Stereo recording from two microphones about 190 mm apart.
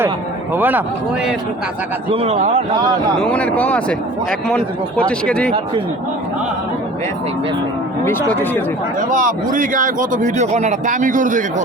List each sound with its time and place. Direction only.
0.5 s speech: 10° right (ahead or behind)
2.0 s speech: 30° right (ahead or behind)
3.2 s a man's voice: 5° left (ahead or behind)
9.1 s speech: 45° right (ahead or behind)